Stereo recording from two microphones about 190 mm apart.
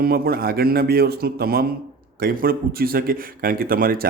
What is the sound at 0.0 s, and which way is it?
Speech, 55° right (ahead or behind).